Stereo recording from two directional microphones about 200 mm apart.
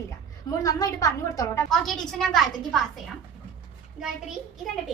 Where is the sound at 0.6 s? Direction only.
15° left (ahead or behind).